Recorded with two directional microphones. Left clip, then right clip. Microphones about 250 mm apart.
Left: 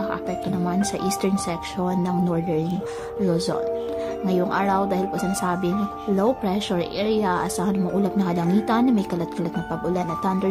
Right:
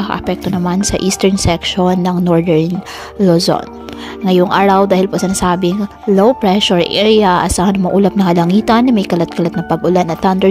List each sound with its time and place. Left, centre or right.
0.0 s speech: right